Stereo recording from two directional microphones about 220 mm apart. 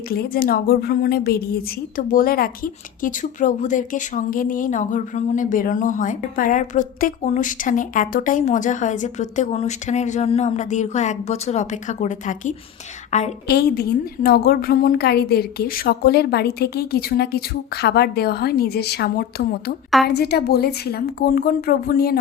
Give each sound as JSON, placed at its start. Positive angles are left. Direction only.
{"t": 0.1, "sound": "a woman's voice", "side_deg": 40}
{"t": 13.5, "sound": "a woman's voice", "side_deg": 45}